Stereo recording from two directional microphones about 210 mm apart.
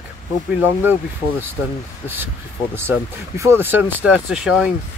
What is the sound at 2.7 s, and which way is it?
Speech, 10° right (ahead or behind).